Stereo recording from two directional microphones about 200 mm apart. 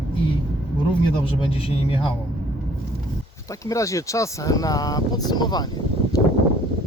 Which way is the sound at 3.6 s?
15° left (ahead or behind).